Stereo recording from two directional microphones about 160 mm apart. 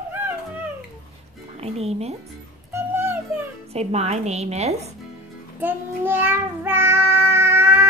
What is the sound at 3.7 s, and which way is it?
A woman's voice, 40° right (ahead or behind).